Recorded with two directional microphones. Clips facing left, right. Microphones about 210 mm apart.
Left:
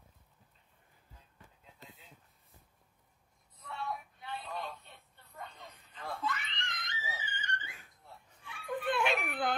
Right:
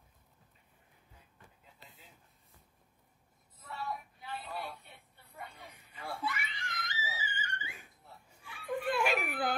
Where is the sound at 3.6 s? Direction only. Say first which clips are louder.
Even; centre (ahead or behind).